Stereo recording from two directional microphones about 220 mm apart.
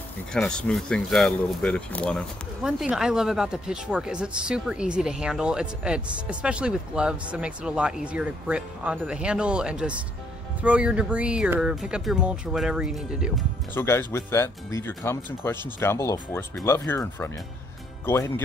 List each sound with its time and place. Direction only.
0.3 s speech: 5° left (ahead or behind)
13.7 s speech: 10° left (ahead or behind)